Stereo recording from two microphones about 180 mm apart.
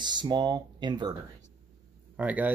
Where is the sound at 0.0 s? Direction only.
25° right (ahead or behind).